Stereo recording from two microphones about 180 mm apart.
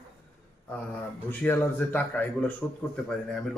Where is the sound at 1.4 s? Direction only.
10° left (ahead or behind).